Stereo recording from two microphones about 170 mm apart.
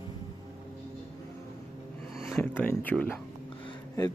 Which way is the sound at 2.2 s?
Centre (ahead or behind).